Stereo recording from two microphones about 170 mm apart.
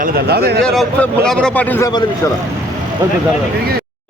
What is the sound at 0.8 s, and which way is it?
A man's voice, 5° left (ahead or behind).